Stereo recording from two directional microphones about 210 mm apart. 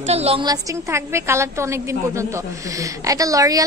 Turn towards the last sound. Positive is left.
turn(degrees=-15)  # may be behind; listen again after turning